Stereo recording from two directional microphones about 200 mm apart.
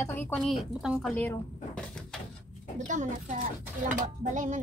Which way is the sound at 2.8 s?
40° right (ahead or behind).